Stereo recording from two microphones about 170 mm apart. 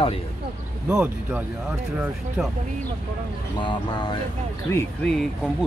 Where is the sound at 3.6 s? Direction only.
25° left (ahead or behind).